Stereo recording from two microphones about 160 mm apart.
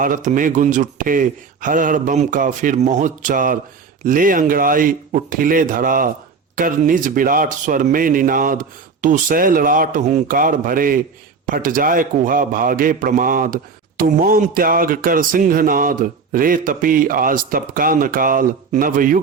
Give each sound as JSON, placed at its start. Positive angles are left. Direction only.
{"t": 0.0, "sound": "a man's voice", "side_deg": -55}